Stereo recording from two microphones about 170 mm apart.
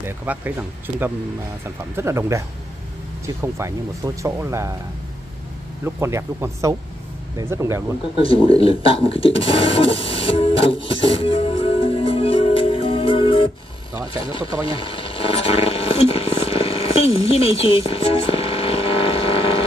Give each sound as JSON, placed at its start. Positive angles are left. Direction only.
{"t": 0.0, "sound": "speech", "side_deg": -10}
{"t": 3.5, "sound": "speech", "side_deg": -15}
{"t": 5.9, "sound": "speech", "side_deg": -15}
{"t": 8.2, "sound": "speech", "side_deg": 30}
{"t": 11.1, "sound": "music", "side_deg": 35}
{"t": 14.7, "sound": "a sound", "side_deg": 30}